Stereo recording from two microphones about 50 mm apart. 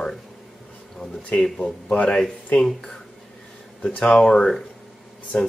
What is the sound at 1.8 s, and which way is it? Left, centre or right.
Speech, left.